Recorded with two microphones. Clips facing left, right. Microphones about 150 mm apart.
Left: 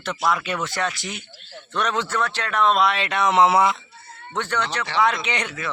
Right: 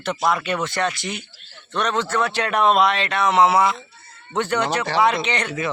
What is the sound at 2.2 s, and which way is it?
Speech, 10° right (ahead or behind).